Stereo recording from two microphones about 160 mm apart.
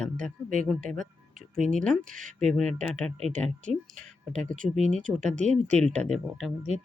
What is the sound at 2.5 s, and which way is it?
Speech, 5° left (ahead or behind).